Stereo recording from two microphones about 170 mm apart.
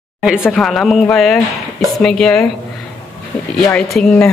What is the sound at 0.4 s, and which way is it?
Speech, 5° left (ahead or behind).